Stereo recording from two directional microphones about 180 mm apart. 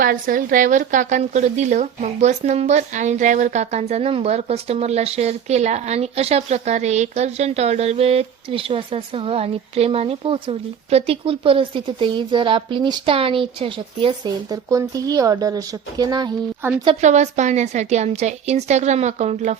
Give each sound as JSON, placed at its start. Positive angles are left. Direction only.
{"t": 0.0, "sound": "a woman's voice", "side_deg": -50}
{"t": 16.6, "sound": "a woman's voice", "side_deg": -15}
{"t": 17.0, "sound": "a woman's voice", "side_deg": -40}